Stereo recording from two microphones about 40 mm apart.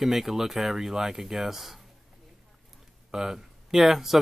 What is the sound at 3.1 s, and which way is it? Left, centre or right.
Speech, centre.